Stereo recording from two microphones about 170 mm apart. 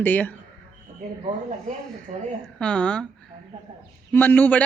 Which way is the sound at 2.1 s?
45° right (ahead or behind).